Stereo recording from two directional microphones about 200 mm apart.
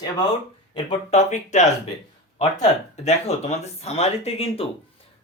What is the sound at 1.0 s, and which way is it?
Speech, 35° left (ahead or behind).